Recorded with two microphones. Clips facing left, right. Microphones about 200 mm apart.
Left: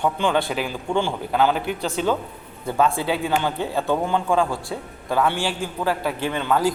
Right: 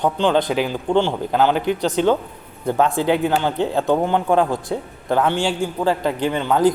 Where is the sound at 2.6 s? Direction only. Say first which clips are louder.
Right 3 dB; 20° right (ahead or behind).